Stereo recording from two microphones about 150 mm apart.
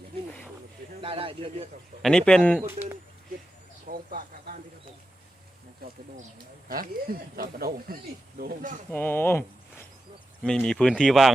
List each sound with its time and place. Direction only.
1.0 s a man's voice: 35° right (ahead or behind)
2.0 s speech: 5° left (ahead or behind)
2.6 s speech: 15° right (ahead or behind)
3.8 s speech: 65° right (ahead or behind)
6.7 s speech: 70° right (ahead or behind)
8.9 s speech: 15° left (ahead or behind)
10.4 s speech: 5° left (ahead or behind)